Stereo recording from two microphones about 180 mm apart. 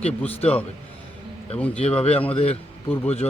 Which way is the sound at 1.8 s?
35° left (ahead or behind).